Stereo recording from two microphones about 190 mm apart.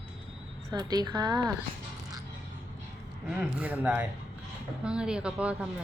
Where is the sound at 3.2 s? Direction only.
10° right (ahead or behind).